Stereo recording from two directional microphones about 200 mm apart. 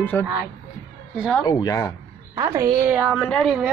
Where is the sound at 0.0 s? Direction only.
10° left (ahead or behind).